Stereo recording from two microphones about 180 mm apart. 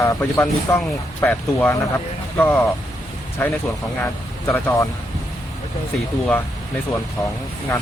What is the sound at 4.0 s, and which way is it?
Speech, 10° left (ahead or behind).